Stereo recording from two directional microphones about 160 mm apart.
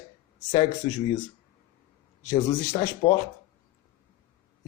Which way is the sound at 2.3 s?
30° left (ahead or behind).